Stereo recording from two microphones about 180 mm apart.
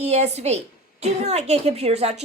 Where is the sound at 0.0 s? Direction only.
35° right (ahead or behind).